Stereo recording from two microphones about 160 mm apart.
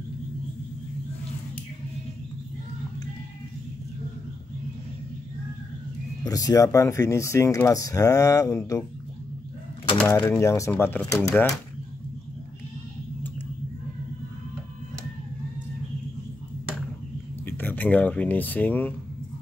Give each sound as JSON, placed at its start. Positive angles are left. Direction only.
{"t": 6.2, "sound": "speech", "side_deg": 20}
{"t": 10.0, "sound": "speech", "side_deg": 20}
{"t": 17.5, "sound": "speech", "side_deg": 10}